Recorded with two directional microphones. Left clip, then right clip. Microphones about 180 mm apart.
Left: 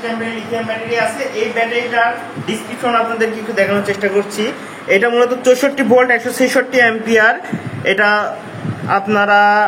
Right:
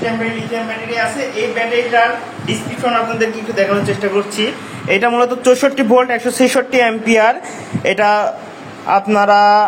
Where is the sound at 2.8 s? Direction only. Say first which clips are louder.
Left 1 dB; centre (ahead or behind).